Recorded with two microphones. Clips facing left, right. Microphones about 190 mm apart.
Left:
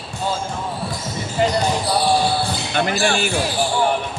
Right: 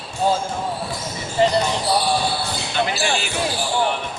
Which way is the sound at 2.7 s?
50° left (ahead or behind).